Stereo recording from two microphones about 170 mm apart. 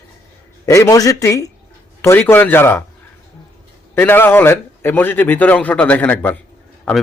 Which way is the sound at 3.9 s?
10° left (ahead or behind).